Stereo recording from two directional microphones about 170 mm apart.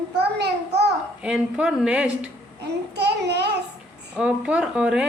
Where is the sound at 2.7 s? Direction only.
75° right (ahead or behind).